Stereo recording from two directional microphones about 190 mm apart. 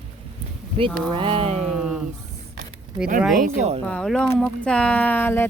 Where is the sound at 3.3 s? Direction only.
40° right (ahead or behind).